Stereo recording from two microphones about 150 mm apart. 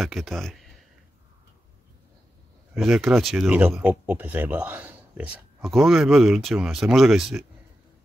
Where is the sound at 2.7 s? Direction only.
Centre (ahead or behind).